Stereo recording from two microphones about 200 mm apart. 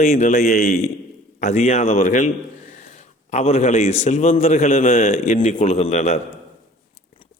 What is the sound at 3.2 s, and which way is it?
A man's voice, 30° left (ahead or behind).